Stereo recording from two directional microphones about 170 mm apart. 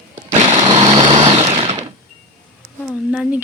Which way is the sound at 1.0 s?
35° right (ahead or behind).